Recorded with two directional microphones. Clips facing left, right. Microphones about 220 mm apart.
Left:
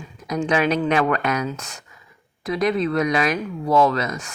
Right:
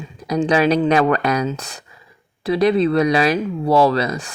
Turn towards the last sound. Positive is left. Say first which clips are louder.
# right 4 dB
turn(degrees=-35)  # may be behind; listen again after turning